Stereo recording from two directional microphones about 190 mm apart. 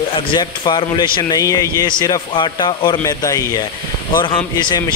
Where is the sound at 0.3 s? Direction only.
25° left (ahead or behind).